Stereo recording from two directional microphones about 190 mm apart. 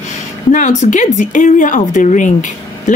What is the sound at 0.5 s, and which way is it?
Speech, 40° left (ahead or behind).